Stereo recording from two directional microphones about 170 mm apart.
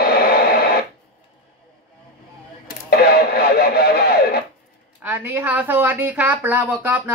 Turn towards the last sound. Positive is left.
turn(degrees=-10)  # may be behind; listen again after turning